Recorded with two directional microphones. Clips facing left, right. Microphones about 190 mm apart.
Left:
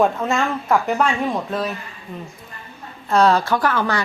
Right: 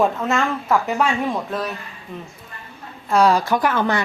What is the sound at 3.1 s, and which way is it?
Speech, 10° right (ahead or behind).